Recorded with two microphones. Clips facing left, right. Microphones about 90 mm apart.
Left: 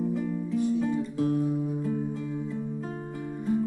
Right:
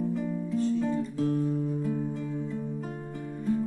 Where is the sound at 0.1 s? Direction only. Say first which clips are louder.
Left 1 dB; 15° left (ahead or behind).